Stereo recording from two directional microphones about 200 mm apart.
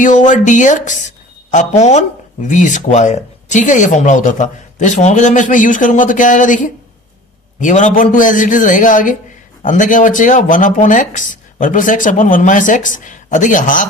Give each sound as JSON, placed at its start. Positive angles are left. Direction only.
{"t": 0.0, "sound": "a woman's voice", "side_deg": 40}